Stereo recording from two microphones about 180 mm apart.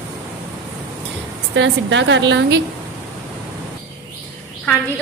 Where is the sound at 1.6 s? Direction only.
90° right.